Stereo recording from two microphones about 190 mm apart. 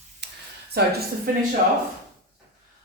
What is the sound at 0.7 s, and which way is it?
Speech, 55° right (ahead or behind).